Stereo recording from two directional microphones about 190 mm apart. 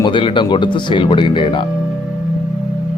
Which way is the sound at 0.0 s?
25° left (ahead or behind).